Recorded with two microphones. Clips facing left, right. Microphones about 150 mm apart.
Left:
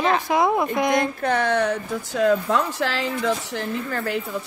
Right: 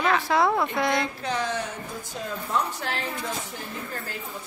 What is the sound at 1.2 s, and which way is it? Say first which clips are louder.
A woman's voice: left 8 dB; 60° left (ahead or behind).